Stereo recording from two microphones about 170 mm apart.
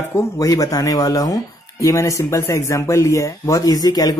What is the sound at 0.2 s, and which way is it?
A man's voice, 20° left (ahead or behind).